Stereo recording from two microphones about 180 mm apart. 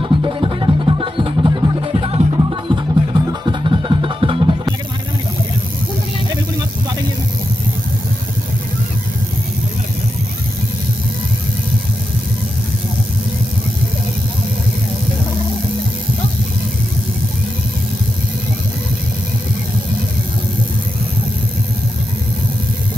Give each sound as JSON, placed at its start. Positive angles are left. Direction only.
{"t": 0.0, "sound": "music", "side_deg": -25}